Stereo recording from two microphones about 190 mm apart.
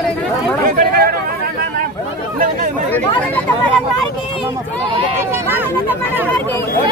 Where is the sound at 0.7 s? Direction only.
50° right (ahead or behind).